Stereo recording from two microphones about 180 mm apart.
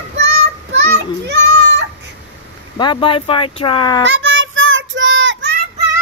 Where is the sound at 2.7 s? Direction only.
25° left (ahead or behind).